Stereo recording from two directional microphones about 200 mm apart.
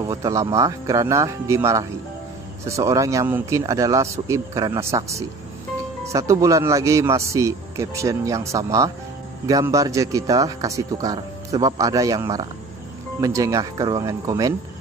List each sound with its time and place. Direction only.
0.0 s speech: 15° right (ahead or behind)